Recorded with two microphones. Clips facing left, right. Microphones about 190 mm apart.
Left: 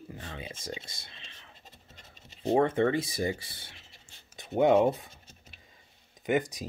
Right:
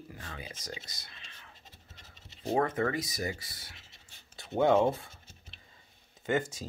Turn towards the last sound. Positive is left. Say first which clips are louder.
# left 3 dB
turn(degrees=15)  # may be behind; listen again after turning